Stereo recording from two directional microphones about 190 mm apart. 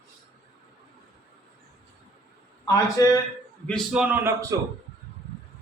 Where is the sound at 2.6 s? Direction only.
20° left (ahead or behind).